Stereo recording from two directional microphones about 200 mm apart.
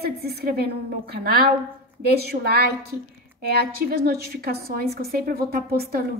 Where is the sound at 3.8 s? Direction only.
50° right (ahead or behind).